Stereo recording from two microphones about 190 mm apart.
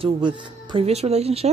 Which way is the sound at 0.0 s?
25° right (ahead or behind).